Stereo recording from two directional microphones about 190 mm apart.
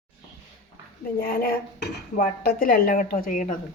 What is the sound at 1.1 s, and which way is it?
Dishes, 55° left (ahead or behind).